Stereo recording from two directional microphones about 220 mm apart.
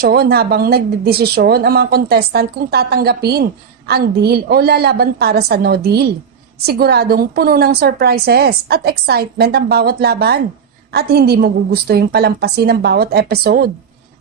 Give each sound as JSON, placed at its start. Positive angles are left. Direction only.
{"t": 0.0, "sound": "a woman's voice", "side_deg": -45}